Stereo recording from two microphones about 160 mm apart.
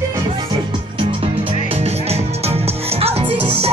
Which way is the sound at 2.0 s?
40° right (ahead or behind).